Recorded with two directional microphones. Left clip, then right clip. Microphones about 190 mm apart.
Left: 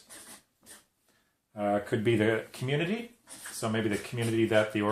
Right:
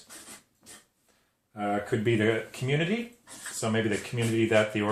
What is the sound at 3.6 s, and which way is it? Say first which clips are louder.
Speech: right 3 dB; 35° left (ahead or behind).